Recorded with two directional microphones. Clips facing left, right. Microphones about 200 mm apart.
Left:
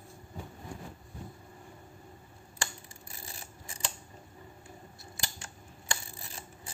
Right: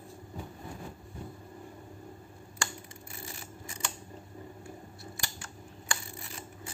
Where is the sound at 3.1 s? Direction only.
35° left (ahead or behind).